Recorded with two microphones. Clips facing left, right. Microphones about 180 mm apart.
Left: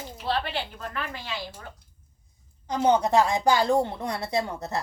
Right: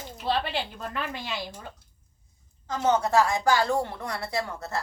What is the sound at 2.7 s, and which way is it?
A woman's voice, 15° left (ahead or behind).